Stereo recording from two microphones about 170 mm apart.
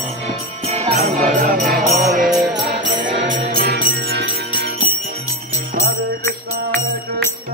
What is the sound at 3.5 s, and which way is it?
Jingle bell, 60° right (ahead or behind).